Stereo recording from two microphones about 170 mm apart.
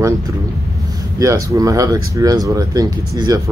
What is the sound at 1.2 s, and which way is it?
Speech, 20° right (ahead or behind).